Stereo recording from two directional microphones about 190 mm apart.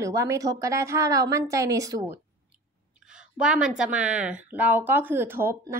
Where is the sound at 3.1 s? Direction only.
5° right (ahead or behind).